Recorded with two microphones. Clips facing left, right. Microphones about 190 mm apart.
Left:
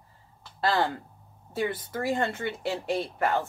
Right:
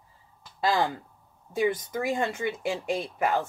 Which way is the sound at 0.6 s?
15° right (ahead or behind).